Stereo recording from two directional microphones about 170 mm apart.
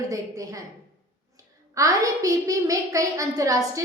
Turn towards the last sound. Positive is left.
turn(degrees=-20)  # may be behind; listen again after turning